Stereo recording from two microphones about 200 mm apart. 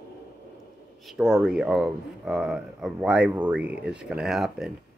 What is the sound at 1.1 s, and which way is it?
Speech, 5° right (ahead or behind).